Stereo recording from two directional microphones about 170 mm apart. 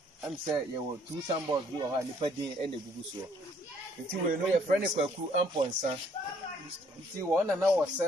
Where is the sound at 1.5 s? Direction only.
25° right (ahead or behind).